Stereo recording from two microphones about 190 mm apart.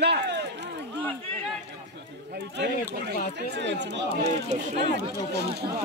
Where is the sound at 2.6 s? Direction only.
65° right (ahead or behind).